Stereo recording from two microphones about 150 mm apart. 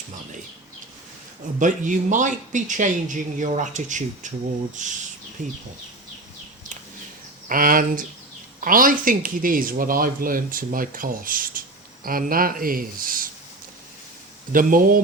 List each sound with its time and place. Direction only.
1.5 s a man's voice: 60° right (ahead or behind)
7.4 s speech: 70° right (ahead or behind)
14.5 s speech: 65° right (ahead or behind)